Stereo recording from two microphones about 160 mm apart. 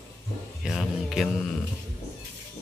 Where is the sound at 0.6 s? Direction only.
Centre (ahead or behind).